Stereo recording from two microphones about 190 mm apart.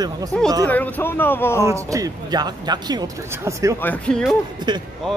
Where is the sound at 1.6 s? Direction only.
15° right (ahead or behind).